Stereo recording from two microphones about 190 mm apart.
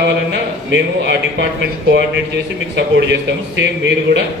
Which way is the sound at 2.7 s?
65° right (ahead or behind).